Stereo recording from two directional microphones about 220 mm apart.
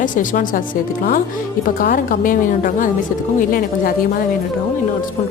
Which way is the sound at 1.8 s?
40° left (ahead or behind).